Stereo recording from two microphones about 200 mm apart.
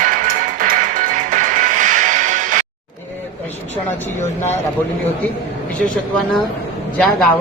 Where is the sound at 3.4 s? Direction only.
10° left (ahead or behind).